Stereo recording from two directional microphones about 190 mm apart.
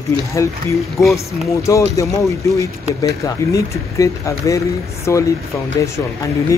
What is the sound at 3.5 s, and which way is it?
Speech, 15° left (ahead or behind).